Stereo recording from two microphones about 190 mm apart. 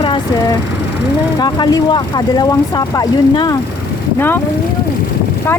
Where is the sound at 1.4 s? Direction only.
20° left (ahead or behind).